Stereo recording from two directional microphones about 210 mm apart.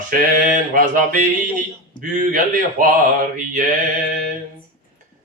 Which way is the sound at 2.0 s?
40° right (ahead or behind).